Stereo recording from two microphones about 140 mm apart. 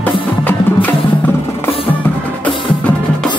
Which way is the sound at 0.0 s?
10° left (ahead or behind).